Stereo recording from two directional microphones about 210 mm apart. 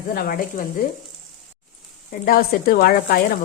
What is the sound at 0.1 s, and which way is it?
Speech, 45° left (ahead or behind).